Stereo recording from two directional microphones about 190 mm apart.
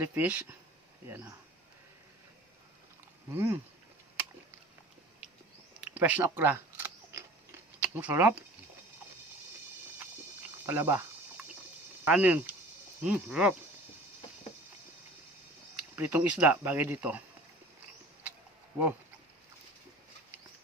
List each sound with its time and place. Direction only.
0.0 s speech: 10° right (ahead or behind)
3.3 s speech: 15° right (ahead or behind)
5.8 s camera: 5° right (ahead or behind)
7.8 s speech: 10° right (ahead or behind)
10.7 s a sound: 10° right (ahead or behind)
12.0 s speech: 10° right (ahead or behind)
16.0 s speech: 10° right (ahead or behind)